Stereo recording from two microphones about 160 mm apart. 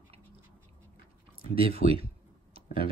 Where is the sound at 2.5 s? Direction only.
35° right (ahead or behind).